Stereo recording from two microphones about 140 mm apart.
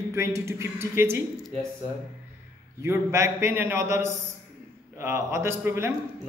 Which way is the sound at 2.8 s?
20° right (ahead or behind).